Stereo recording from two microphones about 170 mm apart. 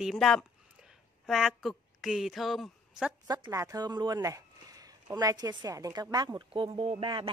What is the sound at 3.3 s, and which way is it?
Speech, 20° right (ahead or behind).